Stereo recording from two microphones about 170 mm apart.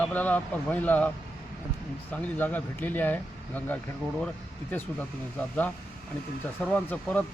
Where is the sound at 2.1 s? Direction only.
10° left (ahead or behind).